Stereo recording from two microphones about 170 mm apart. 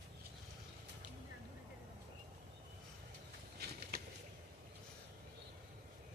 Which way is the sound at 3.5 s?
70° right (ahead or behind).